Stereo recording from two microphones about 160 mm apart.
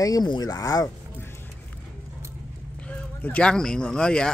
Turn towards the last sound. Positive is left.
turn(degrees=5)  # may be behind; listen again after turning